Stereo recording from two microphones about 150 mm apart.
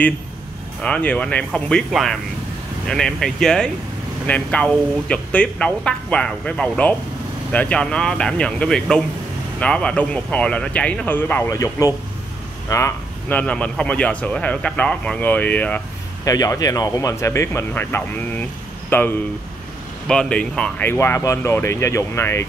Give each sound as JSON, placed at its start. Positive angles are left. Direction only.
{"t": 0.8, "sound": "speech", "side_deg": 10}
{"t": 11.5, "sound": "speech", "side_deg": 25}
{"t": 16.3, "sound": "speech", "side_deg": 25}